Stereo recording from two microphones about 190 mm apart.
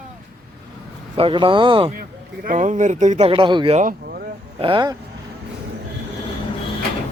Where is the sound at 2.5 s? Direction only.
40° right (ahead or behind).